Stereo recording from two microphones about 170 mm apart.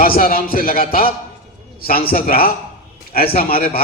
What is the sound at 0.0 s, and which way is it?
A man's voice, 55° left (ahead or behind).